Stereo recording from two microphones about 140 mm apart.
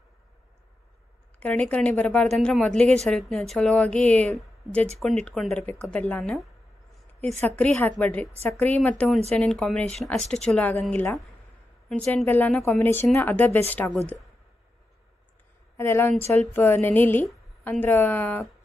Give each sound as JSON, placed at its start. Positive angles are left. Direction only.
{"t": 1.4, "sound": "a woman's voice", "side_deg": 10}
{"t": 7.3, "sound": "a woman's voice", "side_deg": 10}
{"t": 11.9, "sound": "a woman's voice", "side_deg": 10}
{"t": 15.8, "sound": "a woman's voice", "side_deg": 15}